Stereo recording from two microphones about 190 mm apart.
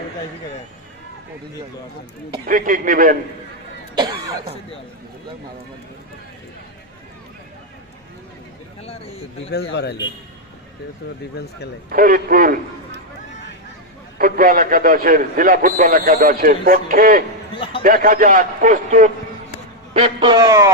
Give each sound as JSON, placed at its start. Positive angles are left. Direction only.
{"t": 2.5, "sound": "speech", "side_deg": -45}
{"t": 3.9, "sound": "cough", "side_deg": -20}
{"t": 8.8, "sound": "a man's voice", "side_deg": 30}
{"t": 9.5, "sound": "speech", "side_deg": 65}
{"t": 11.9, "sound": "speech", "side_deg": -50}
{"t": 14.2, "sound": "speech", "side_deg": -50}
{"t": 17.5, "sound": "a sound", "side_deg": 25}
{"t": 17.8, "sound": "speech", "side_deg": -50}
{"t": 19.9, "sound": "a man's voice", "side_deg": -30}